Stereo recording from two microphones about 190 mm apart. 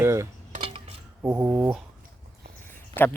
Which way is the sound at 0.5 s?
30° right (ahead or behind).